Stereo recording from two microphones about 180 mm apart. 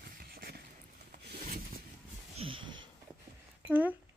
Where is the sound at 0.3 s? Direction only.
55° right (ahead or behind).